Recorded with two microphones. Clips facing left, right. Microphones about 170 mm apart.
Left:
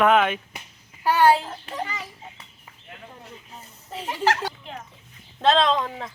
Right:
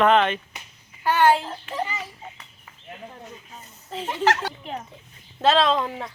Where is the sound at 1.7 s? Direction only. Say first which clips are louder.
Right 3 dB; 35° left (ahead or behind).